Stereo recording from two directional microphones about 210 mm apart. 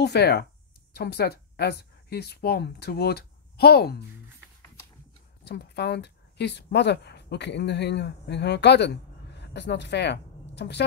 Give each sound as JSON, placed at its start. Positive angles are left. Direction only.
{"t": 0.0, "sound": "speech", "side_deg": 50}
{"t": 5.4, "sound": "speech", "side_deg": 50}